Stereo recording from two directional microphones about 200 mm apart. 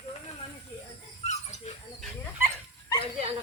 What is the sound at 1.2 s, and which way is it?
Dog, 30° left (ahead or behind).